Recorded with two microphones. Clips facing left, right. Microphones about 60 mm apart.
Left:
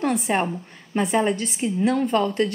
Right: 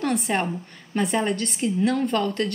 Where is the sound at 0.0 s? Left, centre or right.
Centre.